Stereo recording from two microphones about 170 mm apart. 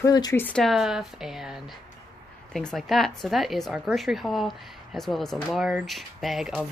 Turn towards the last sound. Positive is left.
turn(degrees=0)  # may be behind; listen again after turning